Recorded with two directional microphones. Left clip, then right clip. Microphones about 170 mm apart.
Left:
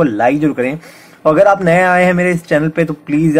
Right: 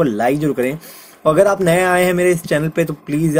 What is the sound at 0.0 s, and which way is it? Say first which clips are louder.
A man's voice: left 4 dB; 45° right (ahead or behind).